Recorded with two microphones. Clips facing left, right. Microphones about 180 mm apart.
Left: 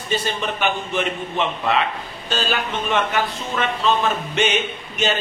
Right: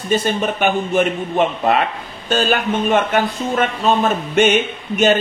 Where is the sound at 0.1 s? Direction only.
50° right (ahead or behind).